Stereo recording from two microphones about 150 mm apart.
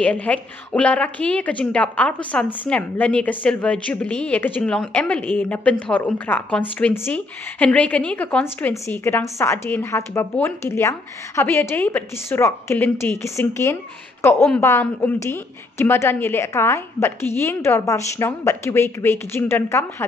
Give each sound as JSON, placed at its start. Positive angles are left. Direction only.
{"t": 0.0, "sound": "a woman's voice", "side_deg": 10}